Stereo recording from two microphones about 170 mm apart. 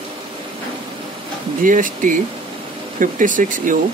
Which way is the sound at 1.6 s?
50° right (ahead or behind).